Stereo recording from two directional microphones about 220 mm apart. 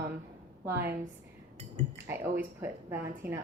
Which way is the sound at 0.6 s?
10° right (ahead or behind).